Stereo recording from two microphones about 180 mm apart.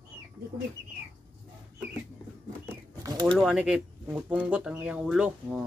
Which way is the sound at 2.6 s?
20° right (ahead or behind).